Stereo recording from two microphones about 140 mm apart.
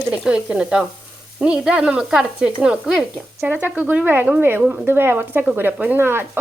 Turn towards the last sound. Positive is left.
turn(degrees=-15)  # may be behind; listen again after turning